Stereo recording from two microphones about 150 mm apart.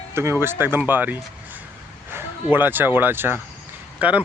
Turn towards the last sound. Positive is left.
turn(degrees=-10)  # may be behind; listen again after turning